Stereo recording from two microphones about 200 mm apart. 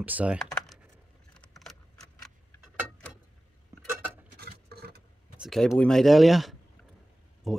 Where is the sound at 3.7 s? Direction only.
15° right (ahead or behind).